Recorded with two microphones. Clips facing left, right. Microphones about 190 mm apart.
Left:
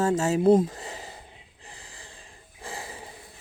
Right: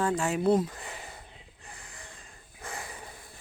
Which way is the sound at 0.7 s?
30° left (ahead or behind).